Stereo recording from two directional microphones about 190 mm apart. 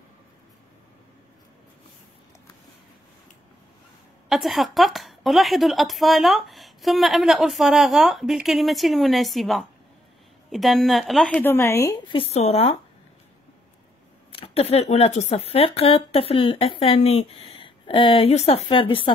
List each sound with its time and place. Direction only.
4.3 s a woman's voice: centre (ahead or behind)
11.4 s a woman's voice: 15° left (ahead or behind)
12.2 s speech: 35° left (ahead or behind)
14.3 s speech: 30° left (ahead or behind)